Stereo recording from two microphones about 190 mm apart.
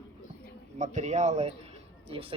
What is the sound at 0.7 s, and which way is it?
Speech, 40° right (ahead or behind).